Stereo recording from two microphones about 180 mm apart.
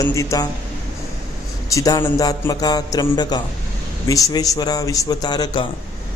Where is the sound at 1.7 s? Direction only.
20° left (ahead or behind).